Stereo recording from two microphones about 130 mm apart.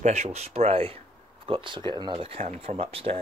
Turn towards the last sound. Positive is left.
turn(degrees=-45)  # may be behind; listen again after turning